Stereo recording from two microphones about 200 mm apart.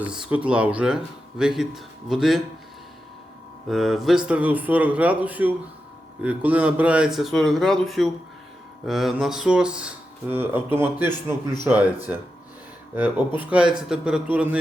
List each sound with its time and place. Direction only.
0.0 s speech: 5° right (ahead or behind)
3.7 s a man's voice: centre (ahead or behind)
13.4 s speech: 5° right (ahead or behind)